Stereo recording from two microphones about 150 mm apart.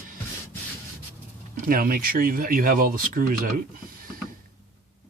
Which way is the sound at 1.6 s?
75° right (ahead or behind).